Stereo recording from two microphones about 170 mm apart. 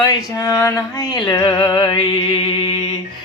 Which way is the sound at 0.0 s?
20° left (ahead or behind).